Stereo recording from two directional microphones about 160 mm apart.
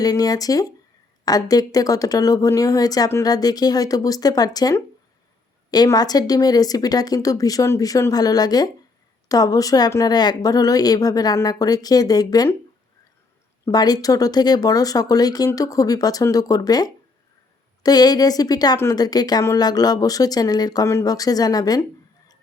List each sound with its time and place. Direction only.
0.0 s a woman's voice: 25° left (ahead or behind)
13.7 s a woman's voice: 25° left (ahead or behind)